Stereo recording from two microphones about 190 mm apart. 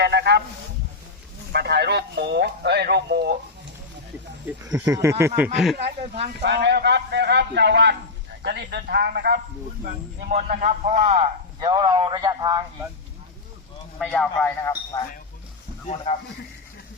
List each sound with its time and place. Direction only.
0.0 s a sound: 60° right (ahead or behind)
1.5 s speech: 60° right (ahead or behind)
4.7 s speech: 15° right (ahead or behind)
5.4 s speech: centre (ahead or behind)
5.7 s speech: 35° right (ahead or behind)
6.4 s speech: 65° right (ahead or behind)
10.3 s a man's voice: 40° right (ahead or behind); by 12.6 s 20° right (ahead or behind)
14.0 s speech: 5° left (ahead or behind)